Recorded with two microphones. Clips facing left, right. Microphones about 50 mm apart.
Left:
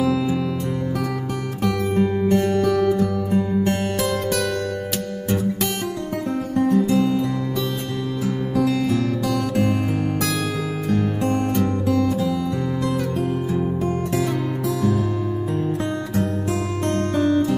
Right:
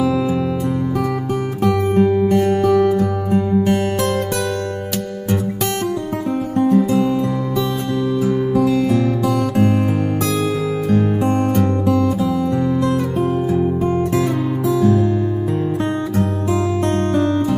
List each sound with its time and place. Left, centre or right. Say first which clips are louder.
0.0 s music: right 3 dB; centre
1.6 s music: right 5 dB; centre
6.6 s music: right 4 dB; centre
6.9 s music: right 2 dB; centre
8.2 s music: right 4 dB; centre
11.3 s music: right 4 dB; centre
13.5 s music: right 5 dB; centre